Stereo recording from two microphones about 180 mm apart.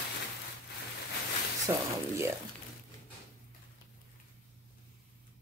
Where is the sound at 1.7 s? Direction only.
15° right (ahead or behind).